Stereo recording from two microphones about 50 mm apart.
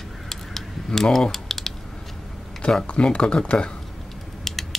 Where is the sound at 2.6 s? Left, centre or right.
Centre.